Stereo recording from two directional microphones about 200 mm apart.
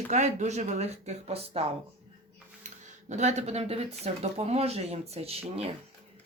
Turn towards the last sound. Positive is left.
turn(degrees=-30)  # may be behind; listen again after turning